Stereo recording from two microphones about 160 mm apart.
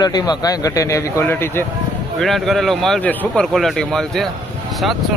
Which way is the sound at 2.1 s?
Centre (ahead or behind).